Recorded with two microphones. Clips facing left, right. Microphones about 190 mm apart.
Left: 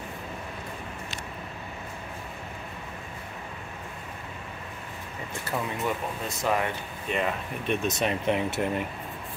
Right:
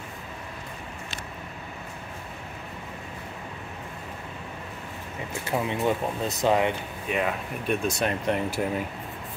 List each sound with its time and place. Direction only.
5.5 s speech: 25° right (ahead or behind)
7.1 s speech: 5° right (ahead or behind)